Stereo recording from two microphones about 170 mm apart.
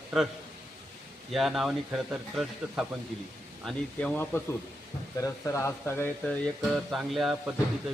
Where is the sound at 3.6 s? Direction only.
5° left (ahead or behind).